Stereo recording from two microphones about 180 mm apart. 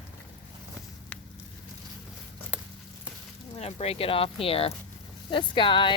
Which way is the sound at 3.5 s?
35° left (ahead or behind).